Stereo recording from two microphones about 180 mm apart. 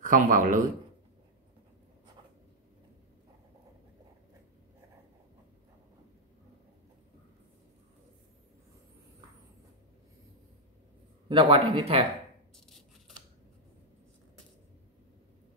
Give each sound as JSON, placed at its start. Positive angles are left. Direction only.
{"t": 0.0, "sound": "speech", "side_deg": -45}
{"t": 11.2, "sound": "speech", "side_deg": -30}